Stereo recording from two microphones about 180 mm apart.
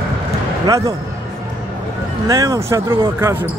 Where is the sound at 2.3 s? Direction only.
20° right (ahead or behind).